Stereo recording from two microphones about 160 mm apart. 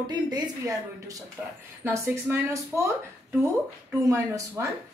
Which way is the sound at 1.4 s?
15° right (ahead or behind).